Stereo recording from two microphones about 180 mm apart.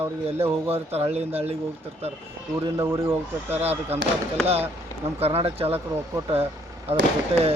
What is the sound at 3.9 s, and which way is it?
Speech, 35° right (ahead or behind).